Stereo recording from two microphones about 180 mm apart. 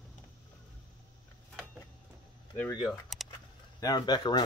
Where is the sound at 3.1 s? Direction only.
Centre (ahead or behind).